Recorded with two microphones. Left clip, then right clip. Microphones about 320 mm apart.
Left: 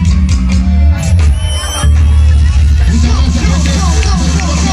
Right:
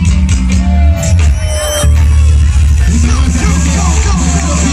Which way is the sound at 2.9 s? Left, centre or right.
Centre.